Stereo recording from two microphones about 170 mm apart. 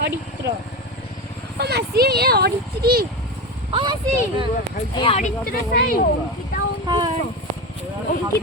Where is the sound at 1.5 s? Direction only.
70° right (ahead or behind).